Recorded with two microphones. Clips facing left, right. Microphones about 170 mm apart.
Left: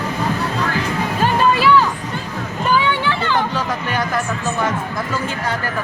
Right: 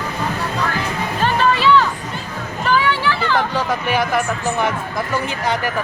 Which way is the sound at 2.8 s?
25° left (ahead or behind).